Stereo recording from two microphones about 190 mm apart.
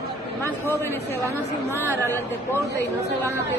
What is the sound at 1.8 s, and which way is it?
Speech, 10° left (ahead or behind).